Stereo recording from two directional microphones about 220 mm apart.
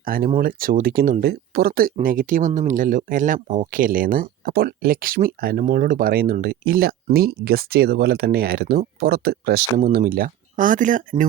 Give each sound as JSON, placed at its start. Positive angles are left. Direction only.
{"t": 0.0, "sound": "speech", "side_deg": -40}